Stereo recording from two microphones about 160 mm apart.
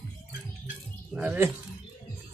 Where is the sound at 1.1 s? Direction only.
10° right (ahead or behind).